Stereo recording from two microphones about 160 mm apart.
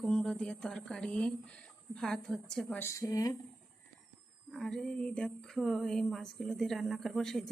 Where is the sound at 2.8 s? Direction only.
20° left (ahead or behind).